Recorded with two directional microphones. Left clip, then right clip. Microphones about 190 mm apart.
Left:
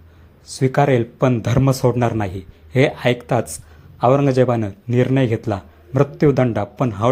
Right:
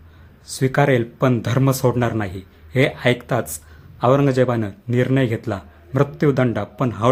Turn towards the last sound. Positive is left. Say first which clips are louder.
# left 2 dB
turn(degrees=10)  # may be behind; listen again after turning